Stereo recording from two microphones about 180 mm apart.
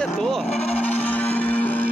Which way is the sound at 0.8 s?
10° left (ahead or behind).